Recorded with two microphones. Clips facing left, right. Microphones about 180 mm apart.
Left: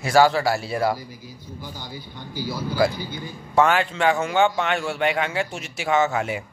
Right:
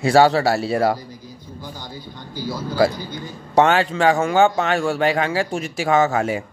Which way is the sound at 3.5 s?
30° right (ahead or behind).